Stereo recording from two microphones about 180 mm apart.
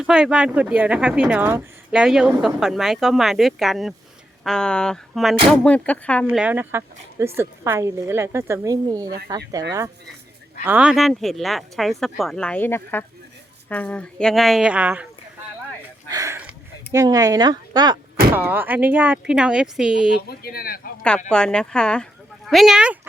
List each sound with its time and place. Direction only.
0.0 s speech: 5° right (ahead or behind)
6.2 s speech: 10° right (ahead or behind)
10.6 s speech: 10° right (ahead or behind)
16.0 s a sound: 20° right (ahead or behind)
16.9 s speech: 20° right (ahead or behind)
18.3 s speech: 10° right (ahead or behind)
20.2 s speech: 55° left (ahead or behind)
21.2 s speech: 5° left (ahead or behind)